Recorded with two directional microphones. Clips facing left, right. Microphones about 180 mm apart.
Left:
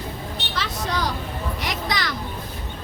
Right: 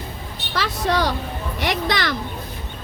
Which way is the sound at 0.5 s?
70° right (ahead or behind).